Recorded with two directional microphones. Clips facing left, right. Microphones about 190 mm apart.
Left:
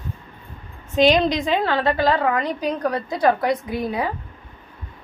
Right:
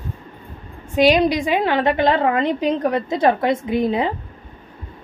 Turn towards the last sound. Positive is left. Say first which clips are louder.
# right 5 dB
turn(degrees=-25)  # may be behind; listen again after turning